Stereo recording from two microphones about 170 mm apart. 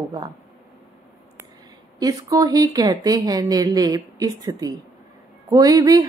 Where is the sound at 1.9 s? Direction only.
20° right (ahead or behind).